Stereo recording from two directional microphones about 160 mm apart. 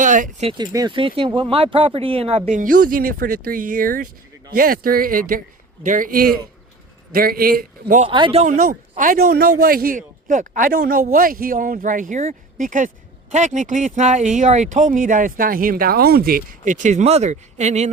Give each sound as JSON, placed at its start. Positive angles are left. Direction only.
{"t": 0.0, "sound": "speech", "side_deg": -55}
{"t": 0.4, "sound": "speech", "side_deg": -25}
{"t": 2.5, "sound": "speech", "side_deg": -55}
{"t": 7.9, "sound": "speech", "side_deg": -35}
{"t": 8.4, "sound": "speech", "side_deg": -55}